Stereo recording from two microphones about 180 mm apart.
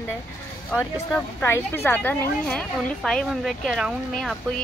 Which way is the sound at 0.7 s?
10° left (ahead or behind).